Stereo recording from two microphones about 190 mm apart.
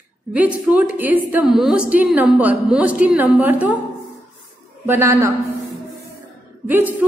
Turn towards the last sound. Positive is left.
turn(degrees=-10)  # may be behind; listen again after turning